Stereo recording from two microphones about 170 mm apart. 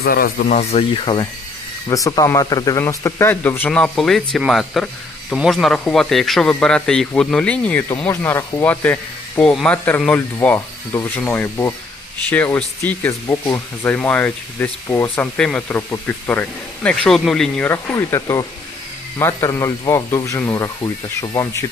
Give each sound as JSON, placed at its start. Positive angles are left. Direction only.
{"t": 0.0, "sound": "speech", "side_deg": 60}
{"t": 17.7, "sound": "speech", "side_deg": 15}